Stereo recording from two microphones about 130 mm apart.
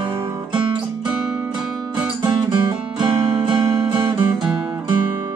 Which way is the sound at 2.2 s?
35° right (ahead or behind).